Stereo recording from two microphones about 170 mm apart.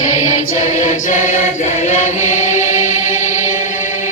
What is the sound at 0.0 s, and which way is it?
Music, 45° left (ahead or behind).